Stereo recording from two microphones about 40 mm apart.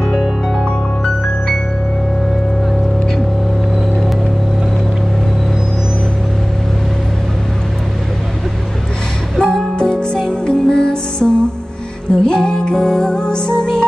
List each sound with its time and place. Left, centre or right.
9.4 s music: centre